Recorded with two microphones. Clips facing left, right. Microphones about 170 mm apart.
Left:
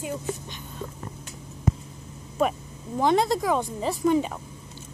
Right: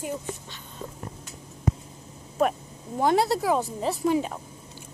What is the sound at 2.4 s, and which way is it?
A woman's voice, centre (ahead or behind).